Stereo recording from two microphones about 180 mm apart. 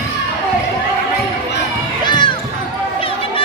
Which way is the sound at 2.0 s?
25° left (ahead or behind).